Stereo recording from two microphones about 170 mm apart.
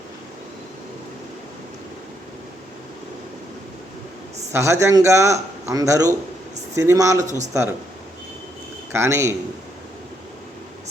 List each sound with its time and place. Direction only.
4.5 s speech: 15° right (ahead or behind)
7.3 s speech: 45° right (ahead or behind)
8.9 s speech: 15° right (ahead or behind)